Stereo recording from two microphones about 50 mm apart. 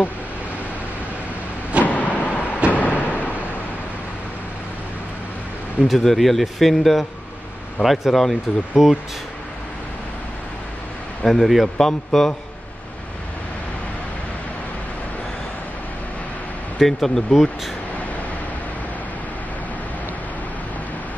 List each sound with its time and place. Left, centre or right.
1.9 s vehicle: left
2.7 s a sound: left
5.9 s a man's voice: centre
11.2 s a man's voice: centre
16.7 s speech: centre